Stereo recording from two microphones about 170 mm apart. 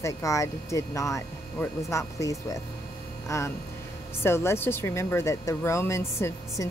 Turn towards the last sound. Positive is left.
turn(degrees=15)  # may be behind; listen again after turning